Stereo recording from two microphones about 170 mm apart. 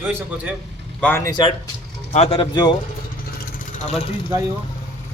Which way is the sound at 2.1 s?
35° left (ahead or behind).